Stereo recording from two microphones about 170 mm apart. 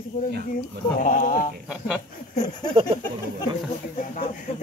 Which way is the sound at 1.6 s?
5° right (ahead or behind).